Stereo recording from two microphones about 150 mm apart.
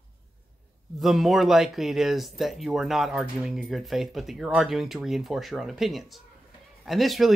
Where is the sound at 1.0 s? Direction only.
Centre (ahead or behind).